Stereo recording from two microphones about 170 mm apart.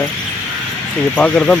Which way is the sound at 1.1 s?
5° left (ahead or behind).